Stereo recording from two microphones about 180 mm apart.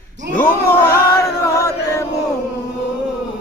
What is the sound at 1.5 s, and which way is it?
Chant, 15° left (ahead or behind).